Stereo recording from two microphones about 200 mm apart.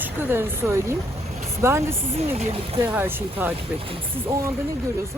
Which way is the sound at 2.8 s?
10° right (ahead or behind).